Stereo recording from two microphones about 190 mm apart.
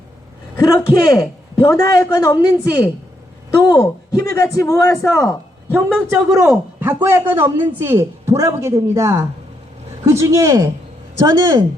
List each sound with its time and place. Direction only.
0.5 s a man's voice: 20° left (ahead or behind)
6.1 s a man's voice: 10° right (ahead or behind)